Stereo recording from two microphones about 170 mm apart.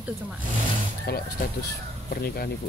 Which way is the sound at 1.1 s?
65° left (ahead or behind).